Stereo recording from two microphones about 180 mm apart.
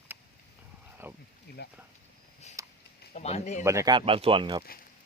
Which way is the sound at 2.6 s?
20° right (ahead or behind).